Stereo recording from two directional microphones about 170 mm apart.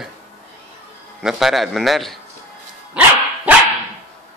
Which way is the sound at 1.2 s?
Centre (ahead or behind).